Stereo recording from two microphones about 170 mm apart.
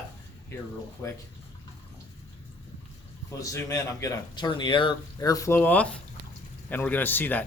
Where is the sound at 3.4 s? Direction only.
20° left (ahead or behind).